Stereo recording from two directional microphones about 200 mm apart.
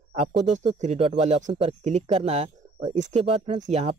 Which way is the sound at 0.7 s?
35° right (ahead or behind).